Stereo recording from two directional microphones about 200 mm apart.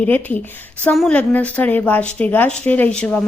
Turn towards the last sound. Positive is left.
turn(degrees=5)  # may be behind; listen again after turning